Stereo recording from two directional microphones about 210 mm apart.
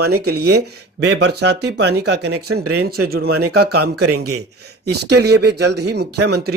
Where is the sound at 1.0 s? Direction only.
55° right (ahead or behind).